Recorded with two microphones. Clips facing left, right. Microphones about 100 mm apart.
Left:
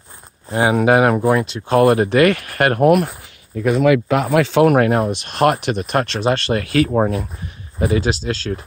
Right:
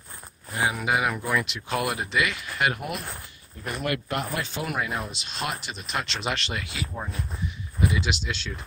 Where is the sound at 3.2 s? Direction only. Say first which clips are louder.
Left 17 dB; 90° left.